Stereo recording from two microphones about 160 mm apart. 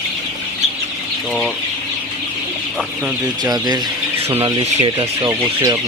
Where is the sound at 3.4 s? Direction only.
25° right (ahead or behind).